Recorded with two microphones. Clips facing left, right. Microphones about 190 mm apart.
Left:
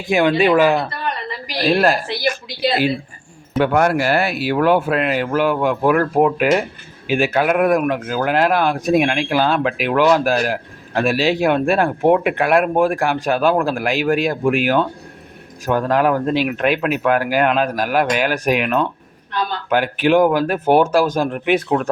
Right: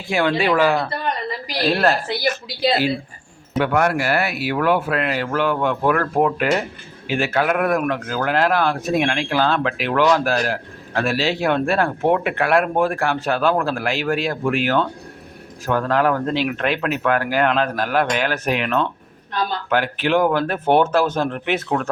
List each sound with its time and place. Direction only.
0.1 s speech: 15° left (ahead or behind)
3.6 s speech: 30° left (ahead or behind); by 21.8 s 15° left (ahead or behind)